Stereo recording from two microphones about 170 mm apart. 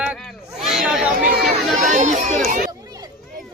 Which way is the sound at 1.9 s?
45° right (ahead or behind).